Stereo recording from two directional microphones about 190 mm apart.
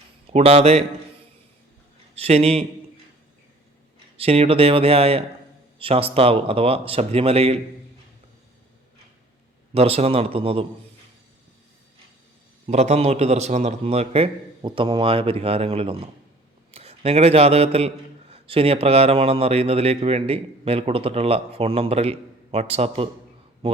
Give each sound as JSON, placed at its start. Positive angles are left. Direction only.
{"t": 0.3, "sound": "a man's voice", "side_deg": -35}
{"t": 2.2, "sound": "a man's voice", "side_deg": -30}
{"t": 4.2, "sound": "a man's voice", "side_deg": -30}
{"t": 9.7, "sound": "a man's voice", "side_deg": -30}
{"t": 12.6, "sound": "a man's voice", "side_deg": -35}